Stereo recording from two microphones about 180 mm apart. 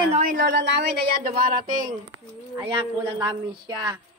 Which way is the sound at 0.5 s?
70° right (ahead or behind).